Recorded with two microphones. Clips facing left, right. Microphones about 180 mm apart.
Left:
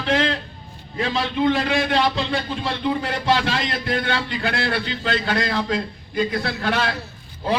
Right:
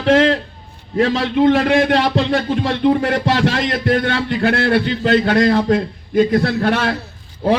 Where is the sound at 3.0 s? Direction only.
55° right (ahead or behind).